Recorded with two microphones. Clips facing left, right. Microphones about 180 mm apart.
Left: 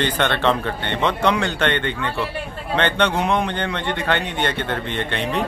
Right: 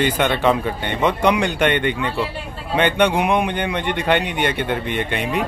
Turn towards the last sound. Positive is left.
turn(degrees=-10)  # may be behind; listen again after turning